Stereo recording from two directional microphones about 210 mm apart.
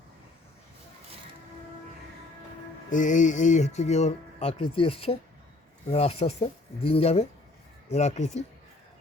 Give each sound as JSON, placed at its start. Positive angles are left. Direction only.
{"t": 2.9, "sound": "speech", "side_deg": 35}